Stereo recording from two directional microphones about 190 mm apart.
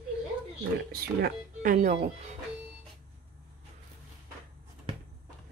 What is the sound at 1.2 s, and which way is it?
Speech, 45° right (ahead or behind).